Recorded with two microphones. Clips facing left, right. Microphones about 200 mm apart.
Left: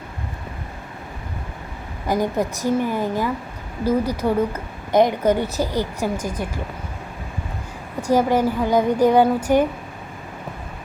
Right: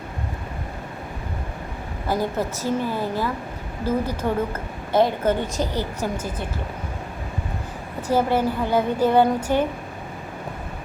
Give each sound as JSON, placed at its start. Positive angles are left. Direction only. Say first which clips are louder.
{"t": 2.0, "sound": "speech", "louder": "left 3 dB", "side_deg": 15}
{"t": 8.1, "sound": "speech", "louder": "left 3 dB", "side_deg": 15}